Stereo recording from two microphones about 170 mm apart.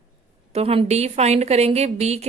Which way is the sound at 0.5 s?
35° right (ahead or behind).